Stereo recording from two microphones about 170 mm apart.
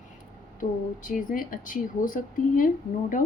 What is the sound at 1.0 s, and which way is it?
A woman's voice, 50° left (ahead or behind).